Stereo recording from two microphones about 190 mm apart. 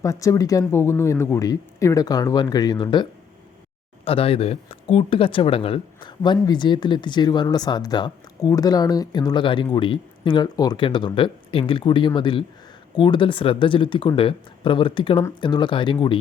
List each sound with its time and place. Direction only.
0.0 s speech: 15° left (ahead or behind)